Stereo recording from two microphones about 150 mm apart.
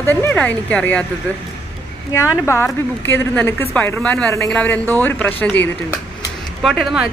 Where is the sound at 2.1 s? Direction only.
15° left (ahead or behind).